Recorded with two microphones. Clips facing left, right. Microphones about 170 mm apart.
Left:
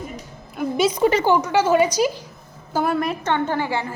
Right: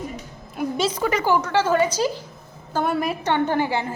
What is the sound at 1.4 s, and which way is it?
Speech, 10° left (ahead or behind).